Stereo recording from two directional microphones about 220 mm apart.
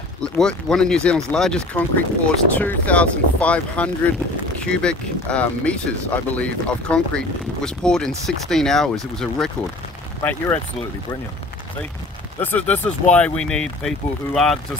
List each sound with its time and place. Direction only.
0.2 s speech: 5° left (ahead or behind)
12.4 s speech: 5° left (ahead or behind)